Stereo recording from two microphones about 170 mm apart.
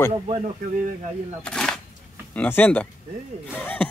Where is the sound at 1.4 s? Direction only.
5° left (ahead or behind).